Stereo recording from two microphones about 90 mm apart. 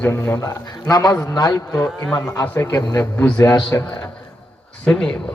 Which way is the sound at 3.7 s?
30° left (ahead or behind).